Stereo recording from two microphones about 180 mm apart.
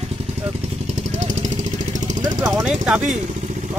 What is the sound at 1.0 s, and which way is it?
Vehicle, 40° right (ahead or behind).